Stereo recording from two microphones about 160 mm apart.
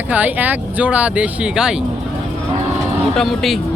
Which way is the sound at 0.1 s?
10° right (ahead or behind).